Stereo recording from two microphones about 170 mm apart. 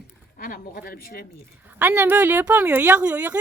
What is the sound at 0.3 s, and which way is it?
Speech, 55° left (ahead or behind).